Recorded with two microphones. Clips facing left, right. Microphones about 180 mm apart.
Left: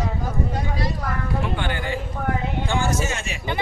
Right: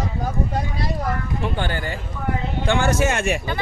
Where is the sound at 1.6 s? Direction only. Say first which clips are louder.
Right 1 dB; 40° right (ahead or behind).